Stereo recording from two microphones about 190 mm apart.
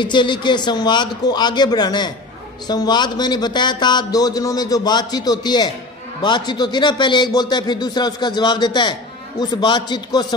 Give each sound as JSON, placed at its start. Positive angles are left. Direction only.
{"t": 0.0, "sound": "a man's voice", "side_deg": 25}